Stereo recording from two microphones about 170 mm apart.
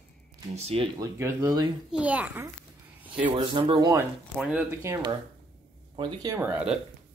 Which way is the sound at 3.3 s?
30° right (ahead or behind).